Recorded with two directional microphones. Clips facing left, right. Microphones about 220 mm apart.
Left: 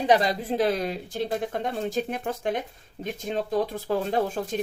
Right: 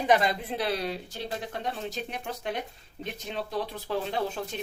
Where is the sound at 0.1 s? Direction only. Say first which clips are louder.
Left 2 dB; 35° left (ahead or behind).